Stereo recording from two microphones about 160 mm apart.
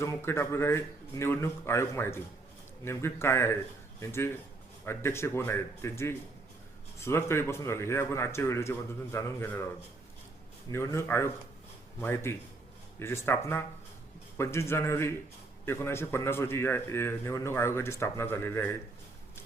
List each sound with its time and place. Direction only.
0.0 s a man's voice: 15° left (ahead or behind)
10.7 s a man's voice: 15° left (ahead or behind)